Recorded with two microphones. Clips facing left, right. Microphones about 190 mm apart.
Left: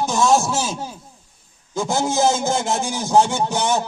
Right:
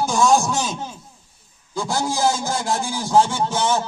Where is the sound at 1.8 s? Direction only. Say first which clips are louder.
Left 3 dB; 20° left (ahead or behind).